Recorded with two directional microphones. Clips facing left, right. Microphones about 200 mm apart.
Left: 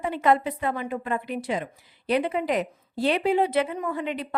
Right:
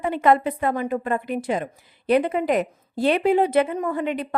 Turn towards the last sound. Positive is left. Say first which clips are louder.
# right 4 dB
turn(degrees=-50)  # may be behind; listen again after turning